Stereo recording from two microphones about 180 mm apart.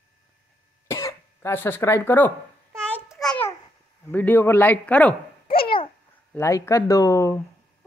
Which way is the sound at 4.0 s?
10° left (ahead or behind).